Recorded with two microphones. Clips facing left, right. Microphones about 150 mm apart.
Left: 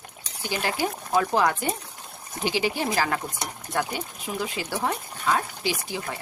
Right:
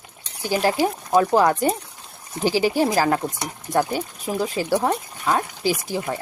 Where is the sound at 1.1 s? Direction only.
40° right (ahead or behind).